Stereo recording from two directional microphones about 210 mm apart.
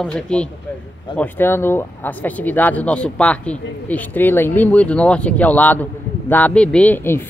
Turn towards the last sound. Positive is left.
turn(degrees=10)  # may be behind; listen again after turning